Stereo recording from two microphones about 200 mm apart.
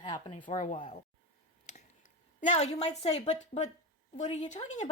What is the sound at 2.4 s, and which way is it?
Speech, 35° left (ahead or behind).